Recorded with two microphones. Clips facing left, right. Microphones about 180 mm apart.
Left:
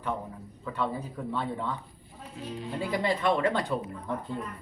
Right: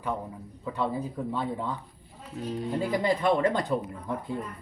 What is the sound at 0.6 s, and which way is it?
Speech, 15° right (ahead or behind).